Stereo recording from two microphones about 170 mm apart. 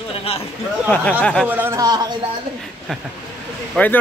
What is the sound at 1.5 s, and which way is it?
Speech, 15° right (ahead or behind).